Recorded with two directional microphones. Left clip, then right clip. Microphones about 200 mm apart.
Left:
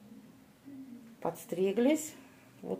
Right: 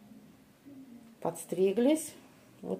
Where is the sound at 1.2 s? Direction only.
15° right (ahead or behind).